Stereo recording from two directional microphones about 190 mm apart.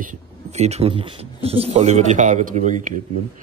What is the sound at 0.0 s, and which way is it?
Speech, 40° right (ahead or behind).